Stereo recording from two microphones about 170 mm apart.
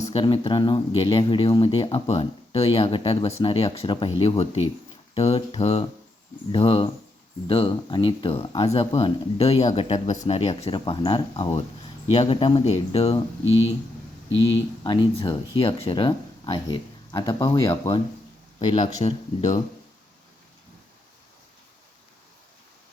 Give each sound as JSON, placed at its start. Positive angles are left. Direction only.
{"t": 0.0, "sound": "speech", "side_deg": 35}
{"t": 14.8, "sound": "speech", "side_deg": 25}
{"t": 18.9, "sound": "speech", "side_deg": 40}